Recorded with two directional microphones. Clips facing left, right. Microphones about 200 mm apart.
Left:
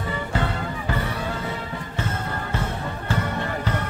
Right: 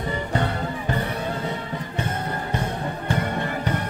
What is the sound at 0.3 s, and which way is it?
Music, 20° right (ahead or behind).